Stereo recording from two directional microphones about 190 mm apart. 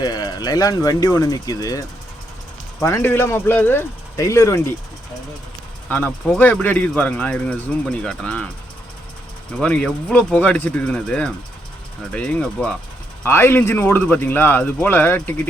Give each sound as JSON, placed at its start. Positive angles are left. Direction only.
{"t": 0.0, "sound": "speech", "side_deg": 20}
{"t": 2.8, "sound": "speech", "side_deg": 15}
{"t": 5.9, "sound": "speech", "side_deg": 5}
{"t": 9.6, "sound": "speech", "side_deg": 5}